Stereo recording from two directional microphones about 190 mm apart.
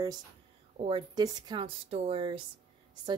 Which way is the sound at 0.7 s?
30° right (ahead or behind).